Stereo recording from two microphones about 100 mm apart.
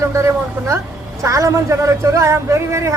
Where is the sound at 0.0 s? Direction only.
30° right (ahead or behind).